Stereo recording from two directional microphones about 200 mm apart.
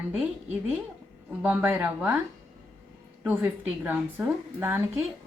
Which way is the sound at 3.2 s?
5° right (ahead or behind).